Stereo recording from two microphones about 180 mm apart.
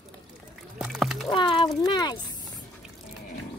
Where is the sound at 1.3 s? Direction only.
25° left (ahead or behind).